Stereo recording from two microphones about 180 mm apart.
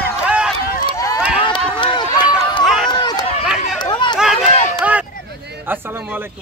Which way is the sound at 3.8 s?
25° left (ahead or behind).